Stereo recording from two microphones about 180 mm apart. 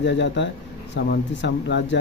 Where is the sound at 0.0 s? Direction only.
80° left.